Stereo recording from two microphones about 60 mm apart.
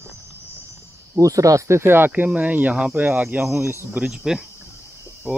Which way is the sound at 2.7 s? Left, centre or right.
Centre.